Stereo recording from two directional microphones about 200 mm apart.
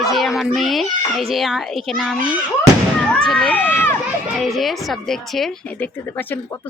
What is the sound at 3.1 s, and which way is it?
Run, 5° left (ahead or behind).